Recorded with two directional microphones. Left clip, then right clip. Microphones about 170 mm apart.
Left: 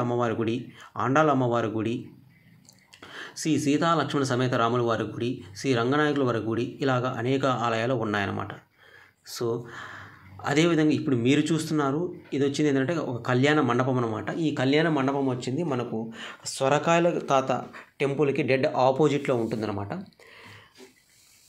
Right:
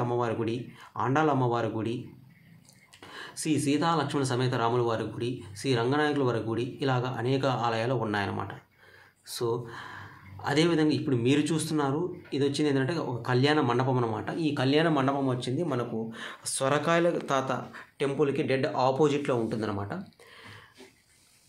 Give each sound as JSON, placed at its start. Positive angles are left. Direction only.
{"t": 0.0, "sound": "speech", "side_deg": 20}
{"t": 3.1, "sound": "speech", "side_deg": 20}